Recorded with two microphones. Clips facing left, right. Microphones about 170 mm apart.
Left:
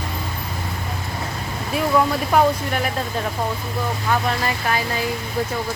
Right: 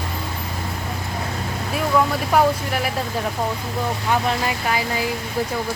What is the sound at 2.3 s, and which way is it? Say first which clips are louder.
Speech: even; 5° right (ahead or behind).